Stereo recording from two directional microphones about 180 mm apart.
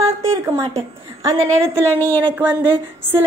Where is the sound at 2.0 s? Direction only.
10° left (ahead or behind).